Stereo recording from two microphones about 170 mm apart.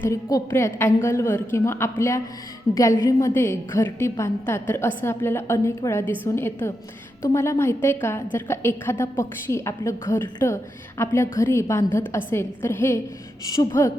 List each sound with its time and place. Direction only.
0.1 s a woman's voice: 20° left (ahead or behind)